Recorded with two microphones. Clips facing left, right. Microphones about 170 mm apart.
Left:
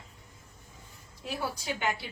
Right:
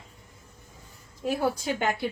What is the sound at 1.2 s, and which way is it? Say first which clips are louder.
Speech: right 9 dB; 50° right (ahead or behind).